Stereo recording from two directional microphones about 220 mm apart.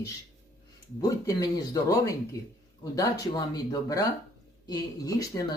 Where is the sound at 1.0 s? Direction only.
15° left (ahead or behind).